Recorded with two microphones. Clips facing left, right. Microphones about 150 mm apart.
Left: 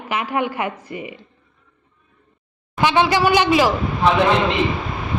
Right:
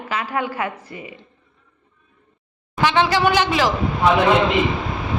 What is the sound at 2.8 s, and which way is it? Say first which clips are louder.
Speech: left 1 dB; 15° left (ahead or behind).